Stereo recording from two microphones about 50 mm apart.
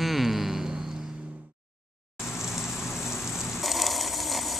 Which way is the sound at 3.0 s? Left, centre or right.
Left.